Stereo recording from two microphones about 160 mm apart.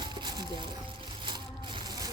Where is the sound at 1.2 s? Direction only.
30° right (ahead or behind).